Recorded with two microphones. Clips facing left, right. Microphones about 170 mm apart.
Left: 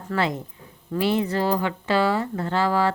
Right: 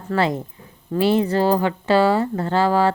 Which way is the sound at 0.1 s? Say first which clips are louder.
Right 4 dB; 35° right (ahead or behind).